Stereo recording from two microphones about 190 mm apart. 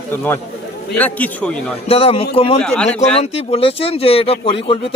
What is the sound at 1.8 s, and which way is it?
A man's voice, 30° left (ahead or behind).